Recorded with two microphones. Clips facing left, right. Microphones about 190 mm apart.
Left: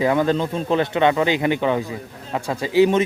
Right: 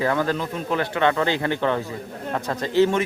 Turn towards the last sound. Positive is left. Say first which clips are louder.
# left 3 dB
turn(degrees=15)  # may be behind; listen again after turning